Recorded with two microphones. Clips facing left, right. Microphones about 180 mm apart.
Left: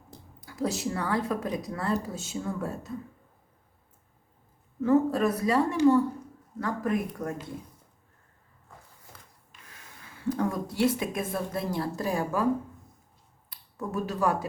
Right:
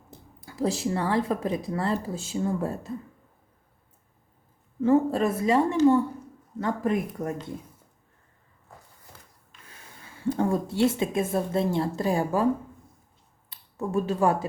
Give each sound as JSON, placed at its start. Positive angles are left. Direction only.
{"t": 0.3, "sound": "speech", "side_deg": -30}
{"t": 4.8, "sound": "speech", "side_deg": -25}
{"t": 10.2, "sound": "speech", "side_deg": -30}
{"t": 13.5, "sound": "speech", "side_deg": -25}